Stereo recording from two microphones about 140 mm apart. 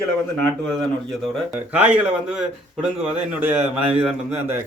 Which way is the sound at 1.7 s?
10° right (ahead or behind).